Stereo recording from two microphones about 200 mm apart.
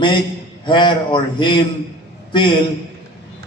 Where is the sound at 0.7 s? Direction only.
25° left (ahead or behind).